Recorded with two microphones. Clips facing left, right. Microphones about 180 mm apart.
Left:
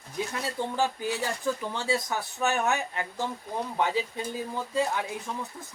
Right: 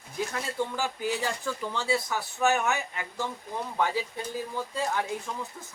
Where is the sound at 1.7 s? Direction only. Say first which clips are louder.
Even; 15° left (ahead or behind).